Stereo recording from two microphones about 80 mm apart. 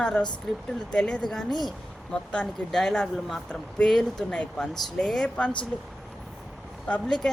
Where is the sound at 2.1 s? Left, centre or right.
Centre.